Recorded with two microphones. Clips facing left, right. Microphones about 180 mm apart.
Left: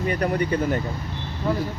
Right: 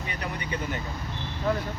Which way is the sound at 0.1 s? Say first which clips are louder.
Left 11 dB; 50° left (ahead or behind).